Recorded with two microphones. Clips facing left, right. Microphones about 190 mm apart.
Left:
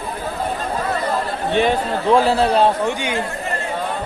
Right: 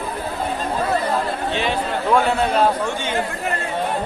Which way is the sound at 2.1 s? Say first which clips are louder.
Left 3 dB; 35° left (ahead or behind).